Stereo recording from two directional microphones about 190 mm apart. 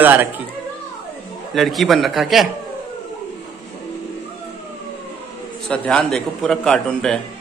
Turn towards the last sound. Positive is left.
turn(degrees=5)  # may be behind; listen again after turning